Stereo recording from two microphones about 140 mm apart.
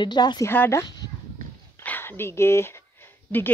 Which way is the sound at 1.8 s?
15° left (ahead or behind).